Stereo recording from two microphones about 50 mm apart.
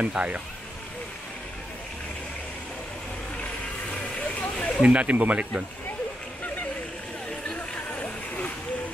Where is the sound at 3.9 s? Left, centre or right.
Left.